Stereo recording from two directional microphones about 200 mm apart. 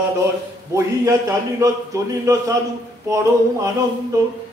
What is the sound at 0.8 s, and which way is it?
A man's voice, 15° right (ahead or behind).